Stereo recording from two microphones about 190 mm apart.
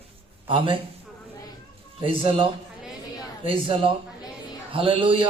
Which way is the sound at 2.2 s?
25° right (ahead or behind).